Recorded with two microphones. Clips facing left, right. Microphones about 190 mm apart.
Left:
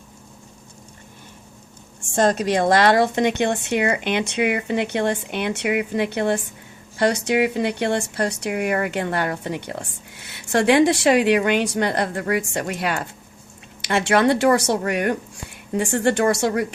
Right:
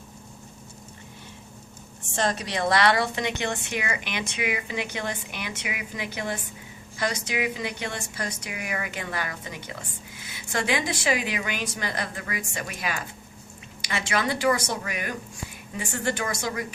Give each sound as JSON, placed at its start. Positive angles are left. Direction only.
{"t": 2.1, "sound": "a woman's voice", "side_deg": 50}